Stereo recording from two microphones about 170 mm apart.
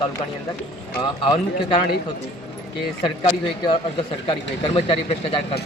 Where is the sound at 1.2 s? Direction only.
30° left (ahead or behind).